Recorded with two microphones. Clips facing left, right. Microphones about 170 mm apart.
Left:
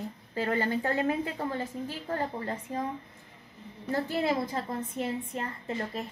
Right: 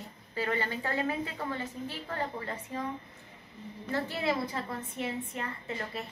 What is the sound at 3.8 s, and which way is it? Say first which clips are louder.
A woman's voice: left 3 dB; 45° left (ahead or behind).